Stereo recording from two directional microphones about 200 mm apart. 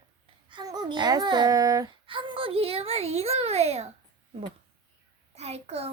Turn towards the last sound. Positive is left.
turn(degrees=-30)  # may be behind; listen again after turning